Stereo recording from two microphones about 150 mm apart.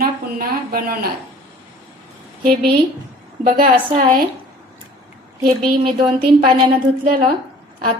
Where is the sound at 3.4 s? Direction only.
80° right.